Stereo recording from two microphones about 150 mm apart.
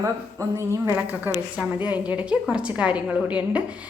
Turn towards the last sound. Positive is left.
turn(degrees=-10)  # may be behind; listen again after turning